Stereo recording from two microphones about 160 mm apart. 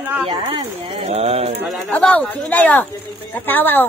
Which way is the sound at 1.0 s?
40° right (ahead or behind).